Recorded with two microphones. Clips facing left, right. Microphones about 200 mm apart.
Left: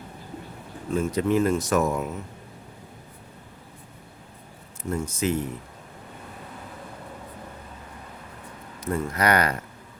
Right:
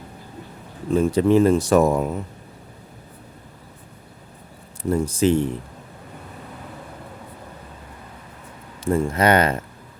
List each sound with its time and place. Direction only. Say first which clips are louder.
0.9 s speech: right 6 dB; 30° right (ahead or behind)
4.8 s speech: right 7 dB; 35° right (ahead or behind)
8.8 s speech: right 6 dB; 25° right (ahead or behind)